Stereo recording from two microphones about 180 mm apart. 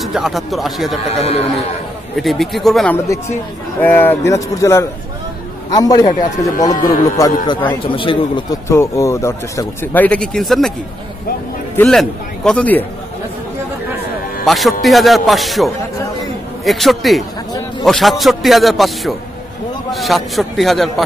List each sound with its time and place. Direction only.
0.0 s a man's voice: centre (ahead or behind)
1.2 s speech: 35° left (ahead or behind)
2.1 s a man's voice: centre (ahead or behind); by 6.1 s 20° left (ahead or behind)
6.7 s speech: 45° left (ahead or behind)
7.9 s speech: 30° left (ahead or behind)
8.6 s speech: 15° left (ahead or behind)
11.7 s a man's voice: 10° left (ahead or behind)
14.4 s a man's voice: centre (ahead or behind)